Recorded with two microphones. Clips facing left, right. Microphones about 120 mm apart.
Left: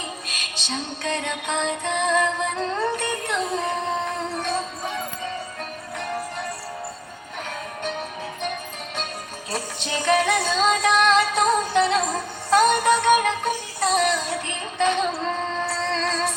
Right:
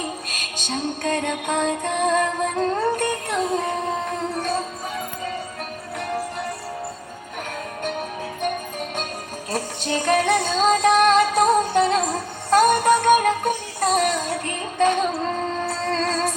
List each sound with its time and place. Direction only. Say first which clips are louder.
0.0 s music: right 4 dB; 45° right (ahead or behind)
9.5 s music: right 4 dB; 45° right (ahead or behind)